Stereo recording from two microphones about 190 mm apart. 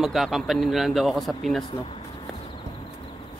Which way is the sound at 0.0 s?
Centre (ahead or behind).